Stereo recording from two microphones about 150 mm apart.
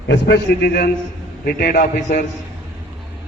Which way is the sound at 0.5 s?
90° left.